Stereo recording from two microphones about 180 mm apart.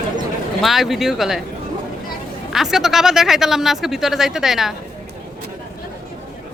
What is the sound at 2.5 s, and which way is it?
Speech, centre (ahead or behind).